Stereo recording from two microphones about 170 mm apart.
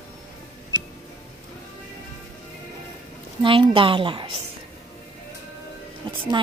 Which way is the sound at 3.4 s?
30° right (ahead or behind).